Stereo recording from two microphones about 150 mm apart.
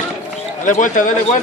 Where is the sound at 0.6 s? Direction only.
55° left (ahead or behind).